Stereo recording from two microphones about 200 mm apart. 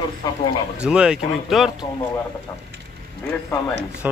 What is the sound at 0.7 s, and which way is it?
Speech, 5° right (ahead or behind).